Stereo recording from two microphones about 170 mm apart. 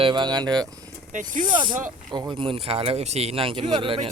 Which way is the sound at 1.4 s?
30° right (ahead or behind).